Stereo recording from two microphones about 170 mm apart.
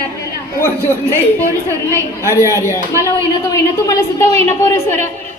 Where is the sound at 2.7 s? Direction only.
15° left (ahead or behind).